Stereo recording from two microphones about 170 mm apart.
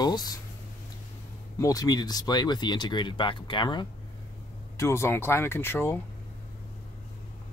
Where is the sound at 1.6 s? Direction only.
20° left (ahead or behind).